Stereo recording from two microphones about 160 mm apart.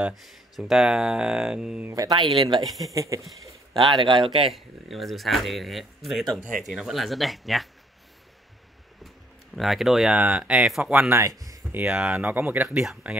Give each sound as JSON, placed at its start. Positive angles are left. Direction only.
{"t": 0.0, "sound": "speech", "side_deg": 0}
{"t": 1.9, "sound": "speech", "side_deg": -25}
{"t": 2.6, "sound": "speech", "side_deg": 0}
{"t": 2.9, "sound": "speech", "side_deg": -20}
{"t": 3.9, "sound": "speech", "side_deg": -30}
{"t": 4.5, "sound": "speech", "side_deg": 0}
{"t": 9.6, "sound": "speech", "side_deg": 0}
{"t": 11.1, "sound": "speech", "side_deg": -20}
{"t": 11.8, "sound": "speech", "side_deg": -5}